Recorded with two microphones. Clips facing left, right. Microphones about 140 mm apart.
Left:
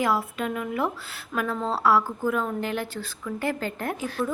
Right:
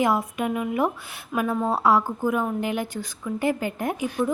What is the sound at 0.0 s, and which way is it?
A woman's voice, 20° right (ahead or behind).